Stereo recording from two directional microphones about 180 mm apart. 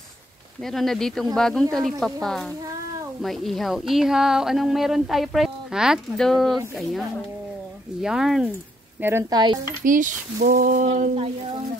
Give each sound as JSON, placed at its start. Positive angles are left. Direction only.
{"t": 0.7, "sound": "speech", "side_deg": 0}
{"t": 9.0, "sound": "speech", "side_deg": -15}
{"t": 9.8, "sound": "speech", "side_deg": -45}